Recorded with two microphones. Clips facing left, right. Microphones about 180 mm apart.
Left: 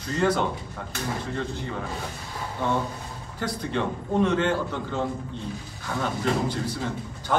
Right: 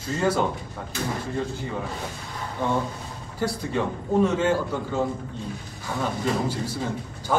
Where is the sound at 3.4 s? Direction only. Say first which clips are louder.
Right 2 dB; 5° right (ahead or behind).